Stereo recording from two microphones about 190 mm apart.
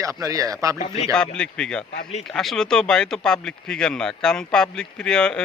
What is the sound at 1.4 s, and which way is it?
Speech, 5° left (ahead or behind).